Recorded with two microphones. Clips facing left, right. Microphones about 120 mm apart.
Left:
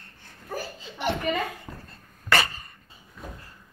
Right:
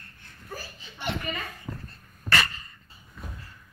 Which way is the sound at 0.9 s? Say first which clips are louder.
Left 6 dB; 75° left (ahead or behind).